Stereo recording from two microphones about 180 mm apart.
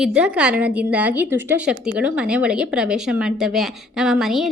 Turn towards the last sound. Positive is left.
turn(degrees=0)  # may be behind; listen again after turning